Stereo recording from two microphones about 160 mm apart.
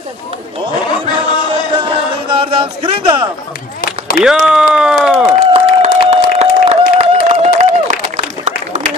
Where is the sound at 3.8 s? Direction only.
60° left (ahead or behind).